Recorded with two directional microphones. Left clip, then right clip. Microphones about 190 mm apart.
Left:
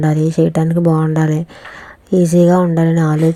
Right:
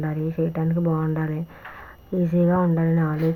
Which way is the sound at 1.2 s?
55° left (ahead or behind).